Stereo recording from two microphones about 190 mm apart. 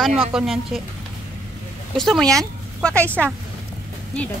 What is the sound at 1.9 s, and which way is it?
Speech, centre (ahead or behind).